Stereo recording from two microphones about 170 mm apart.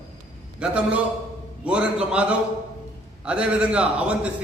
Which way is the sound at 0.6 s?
5° right (ahead or behind).